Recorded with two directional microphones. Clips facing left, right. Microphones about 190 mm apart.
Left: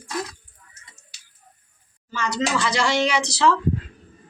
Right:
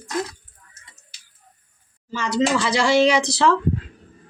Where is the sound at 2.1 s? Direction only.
30° right (ahead or behind).